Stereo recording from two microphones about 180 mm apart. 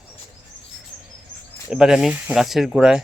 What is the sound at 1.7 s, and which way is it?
Speech, 5° right (ahead or behind).